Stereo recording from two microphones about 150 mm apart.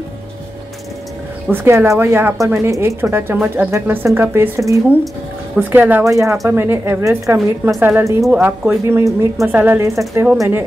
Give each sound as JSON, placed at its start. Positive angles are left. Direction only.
{"t": 1.5, "sound": "speech", "side_deg": -15}